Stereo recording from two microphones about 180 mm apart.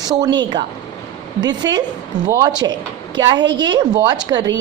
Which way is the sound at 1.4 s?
25° right (ahead or behind).